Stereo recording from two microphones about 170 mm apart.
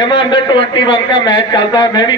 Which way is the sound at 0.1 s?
30° left (ahead or behind).